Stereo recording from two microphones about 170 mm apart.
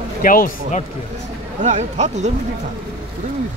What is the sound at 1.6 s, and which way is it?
Speech, 45° right (ahead or behind).